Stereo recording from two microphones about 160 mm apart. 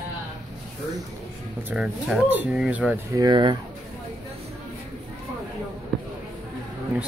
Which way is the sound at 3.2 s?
30° right (ahead or behind).